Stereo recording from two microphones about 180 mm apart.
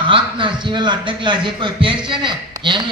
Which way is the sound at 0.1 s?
25° right (ahead or behind).